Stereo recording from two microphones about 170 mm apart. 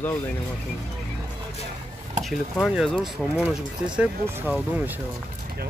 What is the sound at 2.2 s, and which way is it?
Speech, centre (ahead or behind).